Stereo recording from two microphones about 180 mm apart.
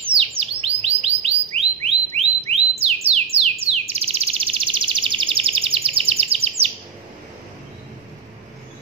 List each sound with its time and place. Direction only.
0.4 s chirp: 35° right (ahead or behind)
3.6 s bird vocalization: 35° right (ahead or behind)